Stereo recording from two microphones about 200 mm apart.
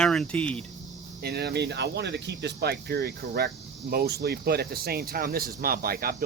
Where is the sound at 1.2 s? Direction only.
55° right (ahead or behind).